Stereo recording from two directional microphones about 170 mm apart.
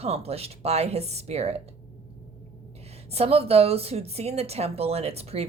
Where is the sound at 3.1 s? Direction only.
35° right (ahead or behind).